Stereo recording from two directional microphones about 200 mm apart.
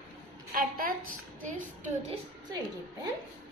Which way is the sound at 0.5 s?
45° right (ahead or behind).